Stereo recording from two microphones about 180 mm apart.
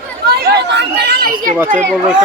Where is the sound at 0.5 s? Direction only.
70° right (ahead or behind); by 1.5 s 50° right (ahead or behind).